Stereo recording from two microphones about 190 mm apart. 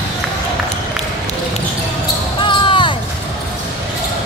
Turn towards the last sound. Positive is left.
turn(degrees=25)  # may be behind; listen again after turning